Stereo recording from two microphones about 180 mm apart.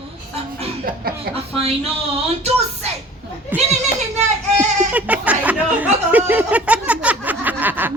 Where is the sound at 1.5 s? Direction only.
35° right (ahead or behind).